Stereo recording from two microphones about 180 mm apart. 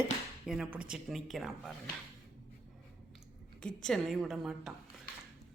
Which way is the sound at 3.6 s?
5° left (ahead or behind).